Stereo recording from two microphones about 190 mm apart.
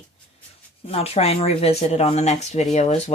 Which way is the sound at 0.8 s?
30° left (ahead or behind).